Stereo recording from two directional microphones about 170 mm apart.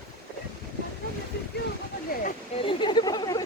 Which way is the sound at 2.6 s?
25° left (ahead or behind).